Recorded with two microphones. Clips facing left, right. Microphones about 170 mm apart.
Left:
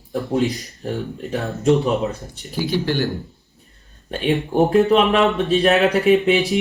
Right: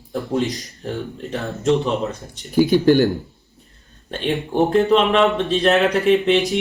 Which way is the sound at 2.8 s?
50° right (ahead or behind).